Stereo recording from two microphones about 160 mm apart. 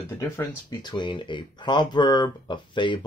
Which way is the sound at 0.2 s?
25° left (ahead or behind).